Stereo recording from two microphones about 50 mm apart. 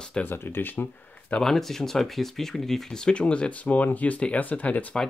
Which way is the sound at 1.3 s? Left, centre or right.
Centre.